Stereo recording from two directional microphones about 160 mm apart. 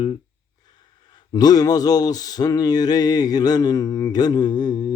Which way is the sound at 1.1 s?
25° left (ahead or behind).